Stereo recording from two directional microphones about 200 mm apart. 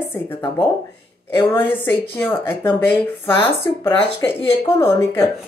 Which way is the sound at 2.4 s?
10° left (ahead or behind).